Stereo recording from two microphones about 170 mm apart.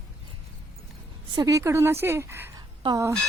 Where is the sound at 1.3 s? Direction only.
20° right (ahead or behind).